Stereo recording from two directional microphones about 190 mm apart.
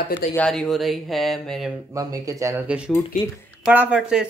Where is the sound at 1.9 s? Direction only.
20° right (ahead or behind).